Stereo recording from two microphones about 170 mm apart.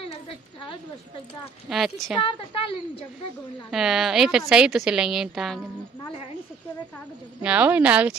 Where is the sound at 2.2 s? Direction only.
35° left (ahead or behind).